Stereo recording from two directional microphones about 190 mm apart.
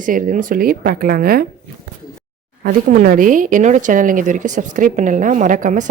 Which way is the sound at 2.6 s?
50° right (ahead or behind).